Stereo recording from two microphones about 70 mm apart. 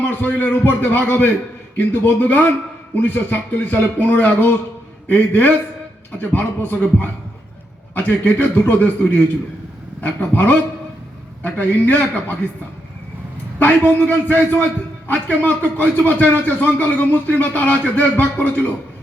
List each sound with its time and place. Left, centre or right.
0.0 s speech: left
13.6 s speech: left